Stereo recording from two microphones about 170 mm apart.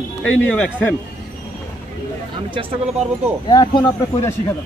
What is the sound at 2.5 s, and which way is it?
Speech, 30° right (ahead or behind).